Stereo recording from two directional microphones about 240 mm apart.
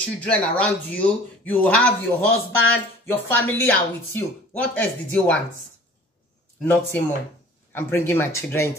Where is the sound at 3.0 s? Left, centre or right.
Centre.